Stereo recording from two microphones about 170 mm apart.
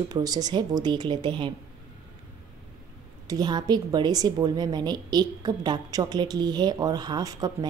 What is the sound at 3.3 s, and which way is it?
A woman's voice, 25° right (ahead or behind).